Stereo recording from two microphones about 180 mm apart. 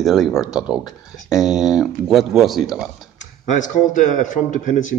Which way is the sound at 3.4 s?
45° left (ahead or behind).